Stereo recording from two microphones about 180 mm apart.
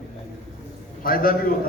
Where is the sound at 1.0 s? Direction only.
55° left (ahead or behind).